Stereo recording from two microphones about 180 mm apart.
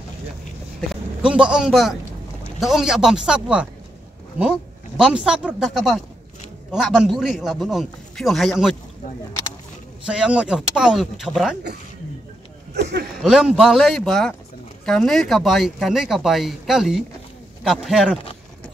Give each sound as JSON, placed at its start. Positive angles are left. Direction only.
{"t": 0.7, "sound": "a man's voice", "side_deg": -5}
{"t": 10.0, "sound": "speech", "side_deg": -5}
{"t": 12.7, "sound": "speech", "side_deg": -70}
{"t": 13.2, "sound": "speech", "side_deg": 0}